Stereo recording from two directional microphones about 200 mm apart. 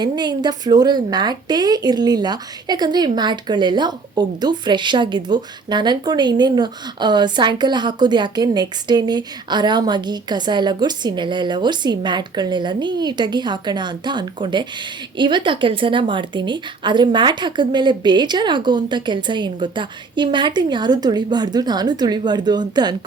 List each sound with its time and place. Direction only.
0.0 s a woman's voice: 20° right (ahead or behind)